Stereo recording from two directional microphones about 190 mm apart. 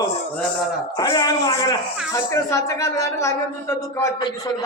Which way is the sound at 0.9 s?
25° left (ahead or behind).